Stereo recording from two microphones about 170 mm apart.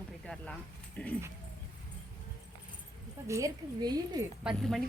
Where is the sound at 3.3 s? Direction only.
20° right (ahead or behind).